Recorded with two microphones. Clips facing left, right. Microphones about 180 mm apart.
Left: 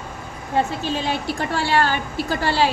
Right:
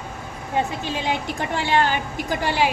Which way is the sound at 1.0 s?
20° right (ahead or behind).